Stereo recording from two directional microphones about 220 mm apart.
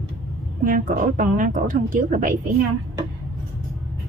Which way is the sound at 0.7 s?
35° right (ahead or behind).